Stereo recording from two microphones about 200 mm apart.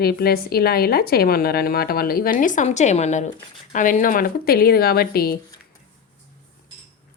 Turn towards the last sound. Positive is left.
turn(degrees=50)  # may be behind; listen again after turning